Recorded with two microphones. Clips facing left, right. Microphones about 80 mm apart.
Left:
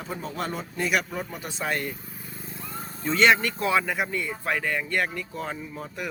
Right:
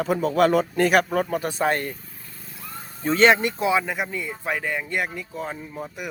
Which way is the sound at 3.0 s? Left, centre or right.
Right.